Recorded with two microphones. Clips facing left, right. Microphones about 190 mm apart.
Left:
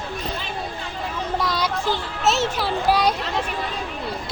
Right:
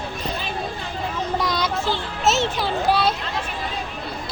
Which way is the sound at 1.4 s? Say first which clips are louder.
Left 1 dB; 5° left (ahead or behind).